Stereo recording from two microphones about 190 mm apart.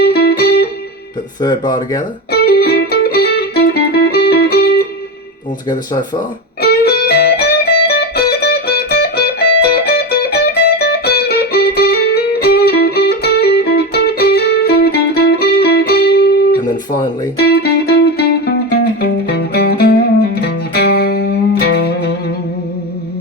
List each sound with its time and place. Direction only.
0.0 s music: 55° left (ahead or behind)
1.4 s speech: 20° left (ahead or behind)
2.3 s music: 55° left (ahead or behind)
5.6 s speech: 20° left (ahead or behind)
6.6 s music: 55° left (ahead or behind)